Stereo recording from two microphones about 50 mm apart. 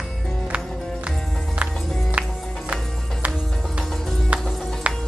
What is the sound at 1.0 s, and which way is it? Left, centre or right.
Music, right.